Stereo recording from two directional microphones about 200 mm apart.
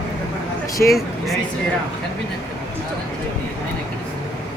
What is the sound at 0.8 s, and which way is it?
Speech, 5° left (ahead or behind).